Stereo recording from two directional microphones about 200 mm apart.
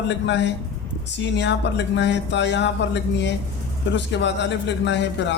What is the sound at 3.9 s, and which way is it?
A man's voice, 60° left (ahead or behind).